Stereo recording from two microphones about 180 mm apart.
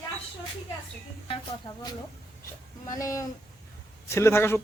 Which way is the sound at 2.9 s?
20° left (ahead or behind).